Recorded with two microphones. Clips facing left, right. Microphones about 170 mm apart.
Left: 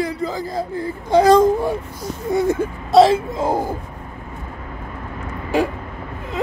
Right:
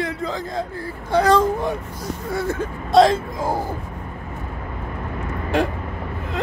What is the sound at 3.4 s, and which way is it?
Speech, 20° left (ahead or behind).